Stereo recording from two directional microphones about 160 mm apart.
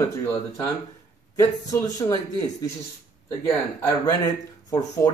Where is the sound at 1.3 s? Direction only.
20° left (ahead or behind).